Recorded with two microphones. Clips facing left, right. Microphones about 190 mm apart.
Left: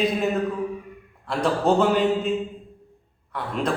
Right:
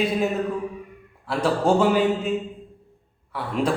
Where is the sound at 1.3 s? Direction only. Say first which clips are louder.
Even; 5° right (ahead or behind).